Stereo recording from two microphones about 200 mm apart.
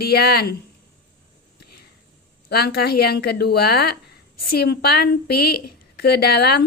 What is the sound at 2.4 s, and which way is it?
Speech, 50° left (ahead or behind).